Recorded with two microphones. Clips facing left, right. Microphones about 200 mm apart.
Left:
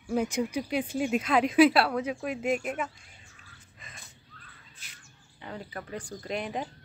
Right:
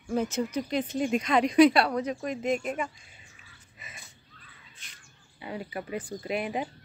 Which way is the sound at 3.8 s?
5° right (ahead or behind).